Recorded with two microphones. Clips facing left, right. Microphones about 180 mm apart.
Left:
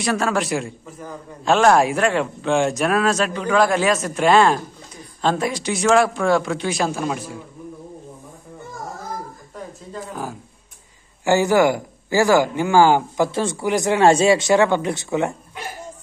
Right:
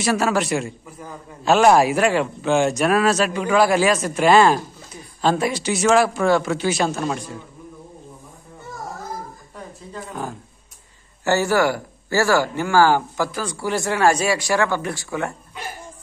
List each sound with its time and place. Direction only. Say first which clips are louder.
0.0 s speech: right 1 dB; 5° right (ahead or behind)
11.2 s speech: left 3 dB; 15° left (ahead or behind)